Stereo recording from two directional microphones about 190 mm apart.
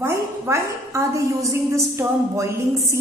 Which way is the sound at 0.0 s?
15° right (ahead or behind).